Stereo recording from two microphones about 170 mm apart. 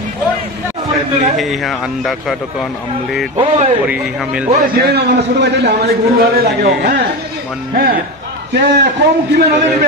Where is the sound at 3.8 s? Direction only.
5° right (ahead or behind).